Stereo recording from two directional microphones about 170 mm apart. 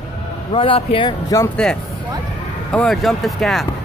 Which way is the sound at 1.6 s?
5° left (ahead or behind).